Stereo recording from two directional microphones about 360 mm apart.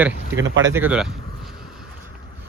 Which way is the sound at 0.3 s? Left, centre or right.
Right.